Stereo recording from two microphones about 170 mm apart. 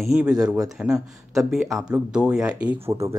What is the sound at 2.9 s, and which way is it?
Speech, 20° right (ahead or behind).